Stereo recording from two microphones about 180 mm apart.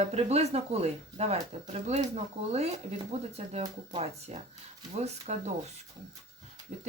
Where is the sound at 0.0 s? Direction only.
35° right (ahead or behind).